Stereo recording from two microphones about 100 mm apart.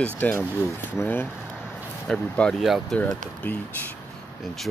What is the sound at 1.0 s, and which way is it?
Speech, 20° left (ahead or behind).